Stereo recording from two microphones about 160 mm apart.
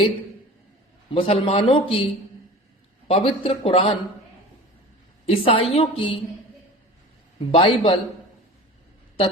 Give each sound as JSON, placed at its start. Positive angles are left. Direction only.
{"t": 1.1, "sound": "a woman's voice", "side_deg": 35}
{"t": 3.1, "sound": "a woman's voice", "side_deg": 35}
{"t": 5.2, "sound": "a woman's voice", "side_deg": 40}
{"t": 7.3, "sound": "a woman's voice", "side_deg": 35}